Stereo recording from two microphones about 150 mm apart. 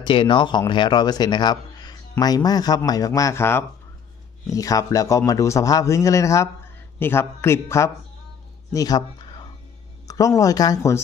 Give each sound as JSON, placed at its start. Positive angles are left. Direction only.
{"t": 0.0, "sound": "speech", "side_deg": 35}
{"t": 10.0, "sound": "speech", "side_deg": 25}